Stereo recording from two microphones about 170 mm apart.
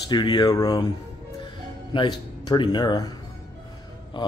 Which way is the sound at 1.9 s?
25° left (ahead or behind).